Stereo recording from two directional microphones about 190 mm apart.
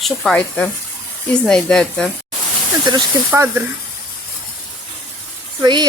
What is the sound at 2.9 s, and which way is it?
Speech, 20° right (ahead or behind).